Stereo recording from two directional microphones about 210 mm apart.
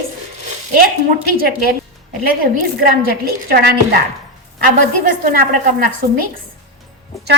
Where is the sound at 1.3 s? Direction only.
45° right (ahead or behind).